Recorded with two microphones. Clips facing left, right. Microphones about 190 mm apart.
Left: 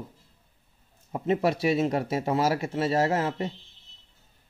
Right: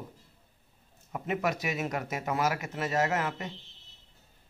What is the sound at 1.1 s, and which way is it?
Speech, 30° left (ahead or behind).